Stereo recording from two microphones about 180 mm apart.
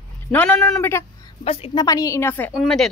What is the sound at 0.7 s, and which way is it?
Speech, 15° left (ahead or behind).